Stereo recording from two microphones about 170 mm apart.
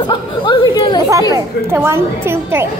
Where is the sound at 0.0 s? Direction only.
25° left (ahead or behind).